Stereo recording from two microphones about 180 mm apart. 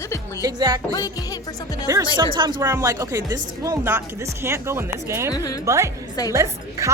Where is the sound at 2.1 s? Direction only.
25° right (ahead or behind).